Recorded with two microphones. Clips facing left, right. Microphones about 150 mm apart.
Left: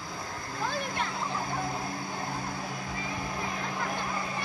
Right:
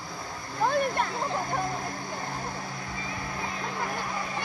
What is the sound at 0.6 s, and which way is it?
Splash, 55° right (ahead or behind).